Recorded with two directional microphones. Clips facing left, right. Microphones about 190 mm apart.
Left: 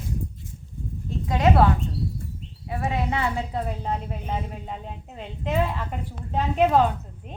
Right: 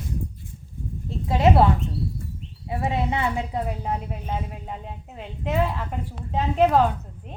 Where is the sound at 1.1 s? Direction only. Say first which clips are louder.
Right 2 dB; 30° right (ahead or behind).